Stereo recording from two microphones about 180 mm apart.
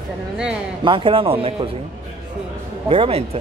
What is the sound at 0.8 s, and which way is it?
Speech, 30° right (ahead or behind).